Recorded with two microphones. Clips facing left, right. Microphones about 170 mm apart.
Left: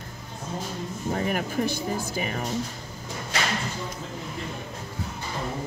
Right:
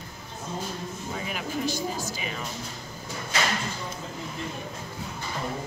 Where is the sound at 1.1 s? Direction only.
55° left (ahead or behind).